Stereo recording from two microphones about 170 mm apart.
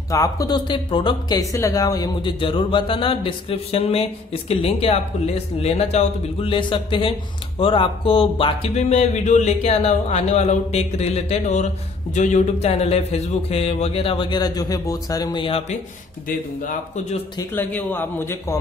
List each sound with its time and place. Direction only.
0.1 s speech: 20° left (ahead or behind)
1.4 s speech: 20° left (ahead or behind); by 15.8 s 35° left (ahead or behind)
16.3 s speech: 45° left (ahead or behind)
17.4 s speech: 10° left (ahead or behind)